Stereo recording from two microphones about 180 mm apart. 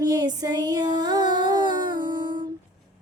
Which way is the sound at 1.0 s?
20° right (ahead or behind).